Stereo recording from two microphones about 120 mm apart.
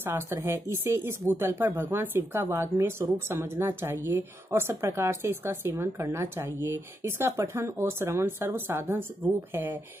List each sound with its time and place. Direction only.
0.0 s speech: 20° right (ahead or behind)